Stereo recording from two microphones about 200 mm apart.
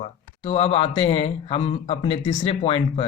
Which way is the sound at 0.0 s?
30° left (ahead or behind).